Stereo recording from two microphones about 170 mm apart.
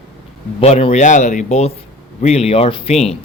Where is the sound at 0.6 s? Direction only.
40° left (ahead or behind).